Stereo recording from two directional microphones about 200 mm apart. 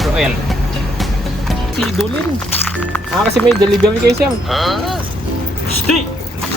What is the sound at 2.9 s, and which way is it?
Speech, 5° left (ahead or behind).